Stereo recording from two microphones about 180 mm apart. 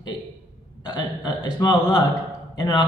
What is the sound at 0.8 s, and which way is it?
A man's voice, 20° left (ahead or behind).